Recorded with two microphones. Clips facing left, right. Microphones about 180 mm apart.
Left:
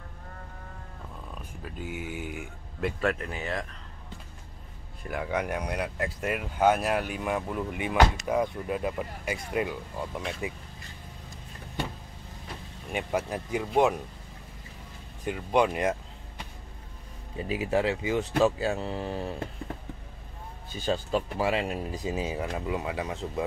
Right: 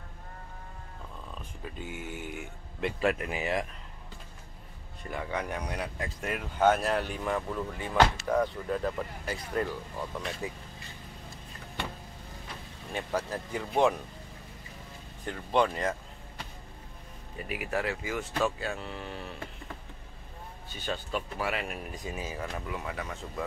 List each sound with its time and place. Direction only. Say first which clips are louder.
1.6 s speech: left 3 dB; 5° left (ahead or behind); by 3.6 s 15° right (ahead or behind)
5.0 s speech: left 4 dB; 5° left (ahead or behind)
12.9 s speech: left 3 dB; 15° left (ahead or behind)
15.2 s speech: left 3 dB; 10° left (ahead or behind); by 19.5 s 35° left (ahead or behind)
20.8 s speech: left 6 dB; 30° left (ahead or behind)